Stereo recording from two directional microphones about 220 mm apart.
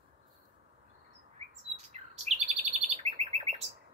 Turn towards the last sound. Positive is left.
turn(degrees=-30)  # may be behind; listen again after turning